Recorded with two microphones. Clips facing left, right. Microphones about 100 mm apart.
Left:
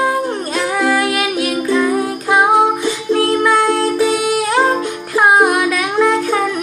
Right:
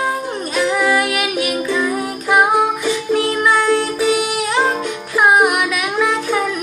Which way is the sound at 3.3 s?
35° left (ahead or behind).